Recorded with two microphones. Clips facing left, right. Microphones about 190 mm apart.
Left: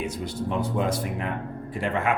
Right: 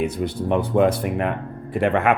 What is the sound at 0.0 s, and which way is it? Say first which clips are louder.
Speech: right 6 dB; 60° right (ahead or behind).